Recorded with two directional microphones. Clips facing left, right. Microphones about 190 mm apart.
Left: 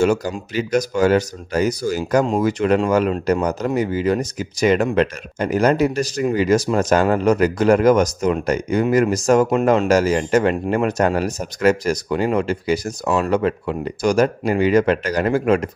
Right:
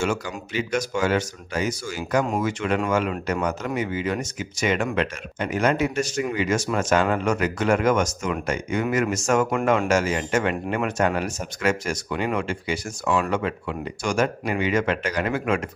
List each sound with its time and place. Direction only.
0.0 s speech: 40° left (ahead or behind)